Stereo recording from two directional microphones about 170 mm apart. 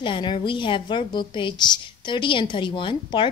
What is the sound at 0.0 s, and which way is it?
A woman's voice, 30° left (ahead or behind).